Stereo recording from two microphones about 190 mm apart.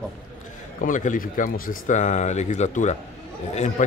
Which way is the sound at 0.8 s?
45° left (ahead or behind).